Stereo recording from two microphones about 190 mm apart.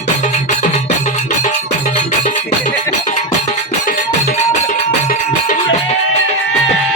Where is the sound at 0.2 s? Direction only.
40° left (ahead or behind).